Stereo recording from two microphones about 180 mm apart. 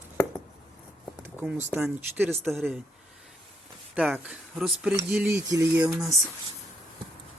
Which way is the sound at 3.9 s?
5° right (ahead or behind).